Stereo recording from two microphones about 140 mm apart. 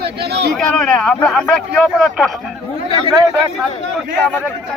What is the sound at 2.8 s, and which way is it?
Speech, 40° left (ahead or behind).